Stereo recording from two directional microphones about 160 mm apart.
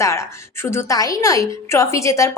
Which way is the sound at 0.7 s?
20° left (ahead or behind).